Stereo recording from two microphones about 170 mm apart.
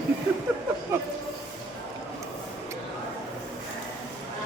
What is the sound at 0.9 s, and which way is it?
Speech, 15° right (ahead or behind).